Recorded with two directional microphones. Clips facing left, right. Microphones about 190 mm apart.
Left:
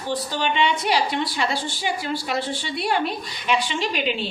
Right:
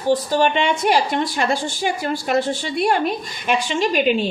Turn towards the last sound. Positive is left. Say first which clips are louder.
# right 7 dB
turn(degrees=-45)  # may be behind; listen again after turning